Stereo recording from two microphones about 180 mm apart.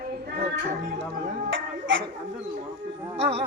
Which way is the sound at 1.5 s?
90° right.